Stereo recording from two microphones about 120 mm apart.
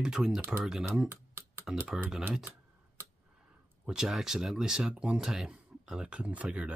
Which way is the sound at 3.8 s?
5° right (ahead or behind).